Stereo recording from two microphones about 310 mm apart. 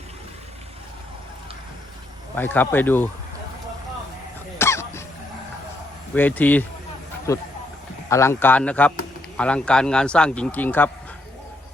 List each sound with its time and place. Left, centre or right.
2.3 s a man's voice: centre
4.5 s cough: centre
6.1 s a man's voice: centre